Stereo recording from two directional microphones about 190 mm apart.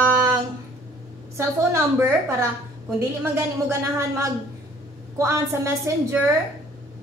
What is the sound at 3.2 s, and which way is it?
A woman's voice, 15° right (ahead or behind).